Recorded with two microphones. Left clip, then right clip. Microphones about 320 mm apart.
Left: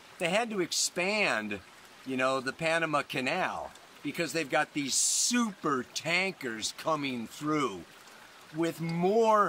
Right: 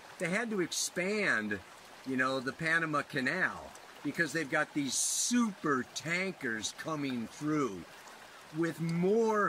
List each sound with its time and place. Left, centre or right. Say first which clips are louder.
0.2 s speech: left 4 dB; centre
8.5 s speech: left 3 dB; centre